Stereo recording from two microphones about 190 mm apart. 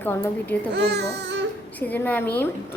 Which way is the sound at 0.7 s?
60° right (ahead or behind).